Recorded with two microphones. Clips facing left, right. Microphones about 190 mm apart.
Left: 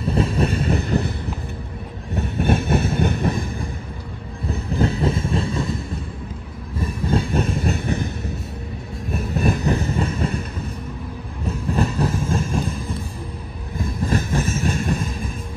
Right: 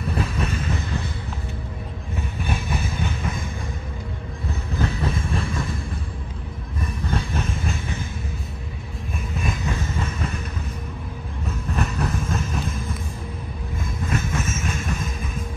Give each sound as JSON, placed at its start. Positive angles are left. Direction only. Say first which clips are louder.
{"t": 0.0, "sound": "vehicle", "louder": "left 6 dB", "side_deg": 30}
{"t": 2.1, "sound": "train", "louder": "left 9 dB", "side_deg": 65}
{"t": 3.2, "sound": "a sound", "louder": "left 7 dB", "side_deg": 35}
{"t": 4.7, "sound": "vehicle", "louder": "left 5 dB", "side_deg": 30}
{"t": 6.8, "sound": "train", "louder": "left 6 dB", "side_deg": 30}
{"t": 7.3, "sound": "vehicle", "louder": "left 6 dB", "side_deg": 35}
{"t": 7.7, "sound": "a sound", "louder": "left 7 dB", "side_deg": 60}
{"t": 9.1, "sound": "vehicle", "louder": "left 8 dB", "side_deg": 35}
{"t": 11.4, "sound": "music", "louder": "left 5 dB", "side_deg": 30}
{"t": 13.7, "sound": "train", "louder": "left 5 dB", "side_deg": 35}